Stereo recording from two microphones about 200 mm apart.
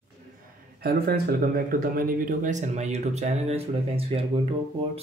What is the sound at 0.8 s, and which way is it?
Speech, 50° right (ahead or behind).